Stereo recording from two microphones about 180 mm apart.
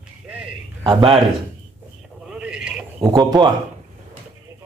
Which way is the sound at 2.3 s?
5° right (ahead or behind).